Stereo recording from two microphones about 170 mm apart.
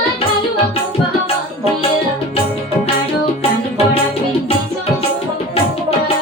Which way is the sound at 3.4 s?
35° left (ahead or behind).